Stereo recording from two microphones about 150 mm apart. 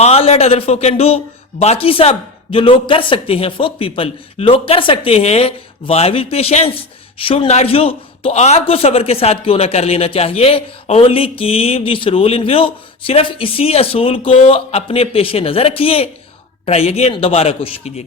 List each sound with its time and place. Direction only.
0.0 s a man's voice: 45° left (ahead or behind)